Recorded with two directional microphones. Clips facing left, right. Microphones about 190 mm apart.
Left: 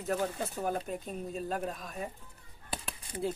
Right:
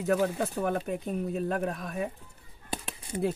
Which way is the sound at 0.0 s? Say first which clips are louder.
Right 6 dB; 65° right (ahead or behind).